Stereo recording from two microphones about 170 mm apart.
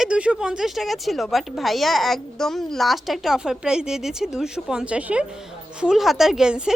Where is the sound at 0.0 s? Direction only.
5° right (ahead or behind).